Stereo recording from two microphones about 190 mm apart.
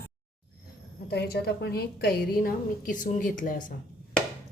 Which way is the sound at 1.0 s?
55° left (ahead or behind).